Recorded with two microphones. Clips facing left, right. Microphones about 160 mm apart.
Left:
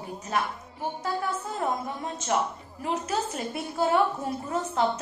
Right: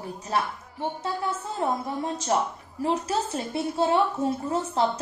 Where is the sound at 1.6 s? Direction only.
25° right (ahead or behind).